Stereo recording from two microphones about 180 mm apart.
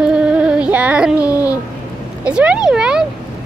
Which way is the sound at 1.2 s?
20° left (ahead or behind).